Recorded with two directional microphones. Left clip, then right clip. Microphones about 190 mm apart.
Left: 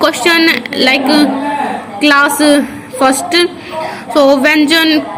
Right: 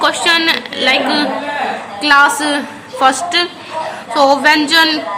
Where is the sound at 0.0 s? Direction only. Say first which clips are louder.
Left 3 dB; 15° left (ahead or behind).